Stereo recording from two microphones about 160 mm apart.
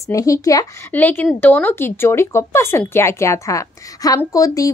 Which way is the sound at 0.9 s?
10° left (ahead or behind).